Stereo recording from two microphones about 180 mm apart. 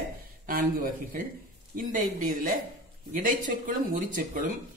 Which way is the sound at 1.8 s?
50° right (ahead or behind).